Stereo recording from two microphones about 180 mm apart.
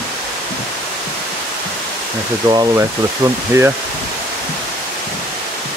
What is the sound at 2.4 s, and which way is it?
Speech, 25° right (ahead or behind).